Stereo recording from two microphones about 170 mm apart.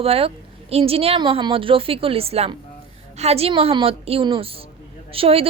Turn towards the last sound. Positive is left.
turn(degrees=-35)  # may be behind; listen again after turning